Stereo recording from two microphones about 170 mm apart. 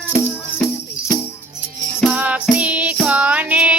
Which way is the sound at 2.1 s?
10° right (ahead or behind).